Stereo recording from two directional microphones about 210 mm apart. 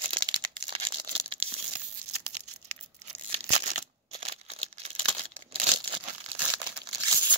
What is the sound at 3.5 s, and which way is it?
Crumpling, 30° right (ahead or behind).